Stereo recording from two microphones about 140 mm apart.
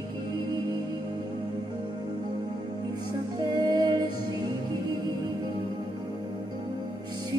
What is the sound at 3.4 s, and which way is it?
Music, 30° right (ahead or behind).